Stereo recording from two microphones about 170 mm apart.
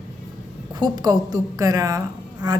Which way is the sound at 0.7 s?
25° right (ahead or behind).